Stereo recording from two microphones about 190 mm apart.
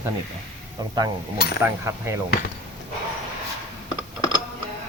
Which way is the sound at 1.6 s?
15° right (ahead or behind).